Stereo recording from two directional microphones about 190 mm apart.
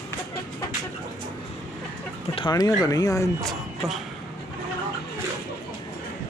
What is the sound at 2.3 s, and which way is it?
Speech, 20° left (ahead or behind).